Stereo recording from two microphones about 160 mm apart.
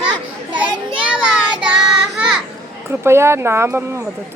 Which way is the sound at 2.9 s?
15° right (ahead or behind).